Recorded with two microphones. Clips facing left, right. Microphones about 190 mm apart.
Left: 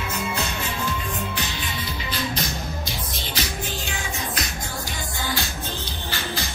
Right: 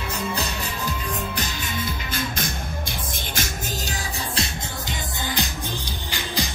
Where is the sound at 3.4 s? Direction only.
50° right (ahead or behind).